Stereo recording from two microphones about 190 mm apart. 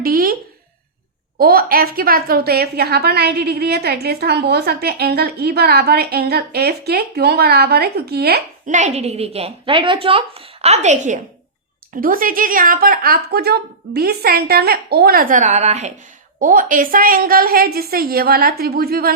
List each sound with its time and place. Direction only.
0.0 s speech: 50° right (ahead or behind)
1.4 s a woman's voice: 50° right (ahead or behind)
8.6 s a woman's voice: 40° right (ahead or behind)
11.9 s a woman's voice: 50° right (ahead or behind)